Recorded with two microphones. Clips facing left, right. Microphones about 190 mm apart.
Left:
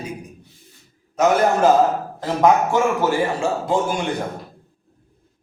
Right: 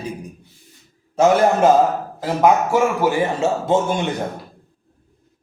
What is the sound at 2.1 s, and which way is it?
Speech, 5° right (ahead or behind).